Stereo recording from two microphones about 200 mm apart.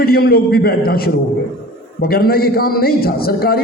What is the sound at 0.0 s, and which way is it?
A man's voice, 50° left (ahead or behind).